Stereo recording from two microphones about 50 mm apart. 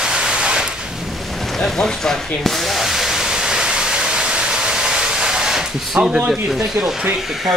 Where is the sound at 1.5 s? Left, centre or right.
Centre.